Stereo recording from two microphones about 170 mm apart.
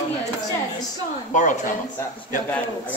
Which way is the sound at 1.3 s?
50° left (ahead or behind).